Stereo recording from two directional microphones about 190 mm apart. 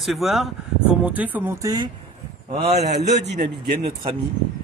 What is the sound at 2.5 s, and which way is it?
Speech, 35° right (ahead or behind).